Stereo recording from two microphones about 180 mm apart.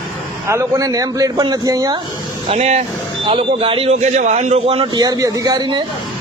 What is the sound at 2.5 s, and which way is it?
A man's voice, 40° right (ahead or behind).